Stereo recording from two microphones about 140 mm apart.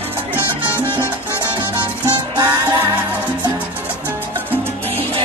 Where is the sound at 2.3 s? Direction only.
25° right (ahead or behind).